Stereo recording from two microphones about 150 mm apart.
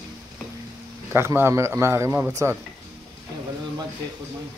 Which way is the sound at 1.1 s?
15° right (ahead or behind).